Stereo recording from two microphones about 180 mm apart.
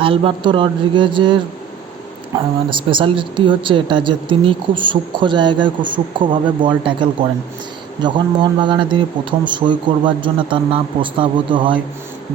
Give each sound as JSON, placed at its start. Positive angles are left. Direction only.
{"t": 0.0, "sound": "speech", "side_deg": -30}